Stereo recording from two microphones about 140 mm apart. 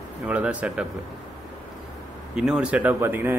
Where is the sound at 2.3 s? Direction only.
5° right (ahead or behind).